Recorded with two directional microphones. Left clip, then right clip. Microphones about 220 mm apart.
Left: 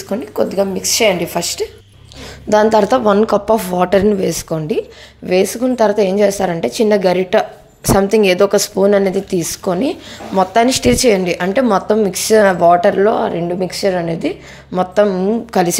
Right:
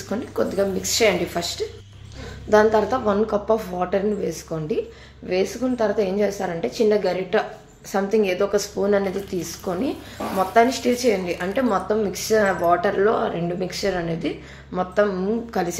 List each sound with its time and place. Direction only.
0.1 s a woman's voice: 30° left (ahead or behind)